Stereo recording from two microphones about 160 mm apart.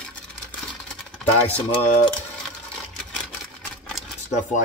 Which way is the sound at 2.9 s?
5° left (ahead or behind).